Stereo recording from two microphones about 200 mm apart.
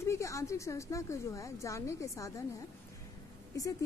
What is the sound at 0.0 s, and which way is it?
A woman's voice, 15° left (ahead or behind).